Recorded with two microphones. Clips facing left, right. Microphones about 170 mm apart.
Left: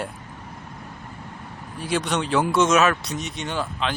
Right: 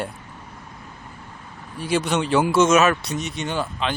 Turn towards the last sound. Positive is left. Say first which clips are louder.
# right 2 dB
turn(degrees=0)  # may be behind; listen again after turning